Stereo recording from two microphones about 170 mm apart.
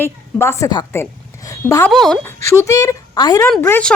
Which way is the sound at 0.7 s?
25° left (ahead or behind).